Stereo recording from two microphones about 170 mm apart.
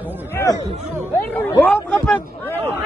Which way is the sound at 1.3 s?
15° left (ahead or behind).